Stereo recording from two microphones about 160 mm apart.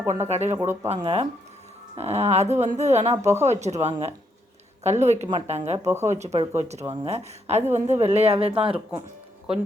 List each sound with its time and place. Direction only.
0.0 s speech: 15° right (ahead or behind)
0.3 s speech: 45° right (ahead or behind)
0.5 s speech: 15° right (ahead or behind)
1.0 s speech: 40° right (ahead or behind)
5.8 s speech: 15° right (ahead or behind)
6.1 s speech: 45° right (ahead or behind)